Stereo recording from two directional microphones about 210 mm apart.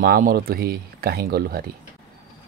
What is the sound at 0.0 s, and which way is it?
Speech, 45° right (ahead or behind).